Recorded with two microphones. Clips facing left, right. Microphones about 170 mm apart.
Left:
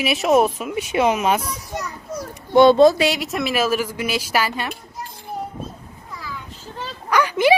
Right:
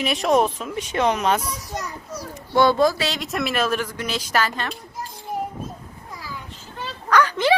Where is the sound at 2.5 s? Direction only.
25° left (ahead or behind).